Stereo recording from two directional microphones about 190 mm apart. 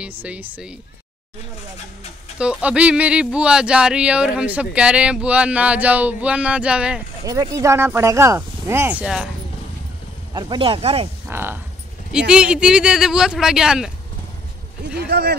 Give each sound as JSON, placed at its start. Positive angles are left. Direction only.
{"t": 0.2, "sound": "speech", "side_deg": -10}
{"t": 2.3, "sound": "speech", "side_deg": -5}
{"t": 7.2, "sound": "speech", "side_deg": -15}
{"t": 10.3, "sound": "speech", "side_deg": -25}
{"t": 11.2, "sound": "speech", "side_deg": -10}
{"t": 15.0, "sound": "speech", "side_deg": -55}